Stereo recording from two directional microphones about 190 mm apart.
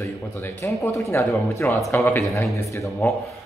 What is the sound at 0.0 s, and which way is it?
A man's voice, 10° left (ahead or behind).